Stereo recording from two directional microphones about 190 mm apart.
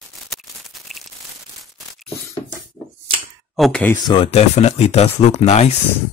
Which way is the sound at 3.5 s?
Centre (ahead or behind).